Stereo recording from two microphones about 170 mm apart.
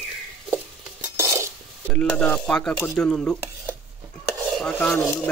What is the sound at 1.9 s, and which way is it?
Dishes, 5° left (ahead or behind).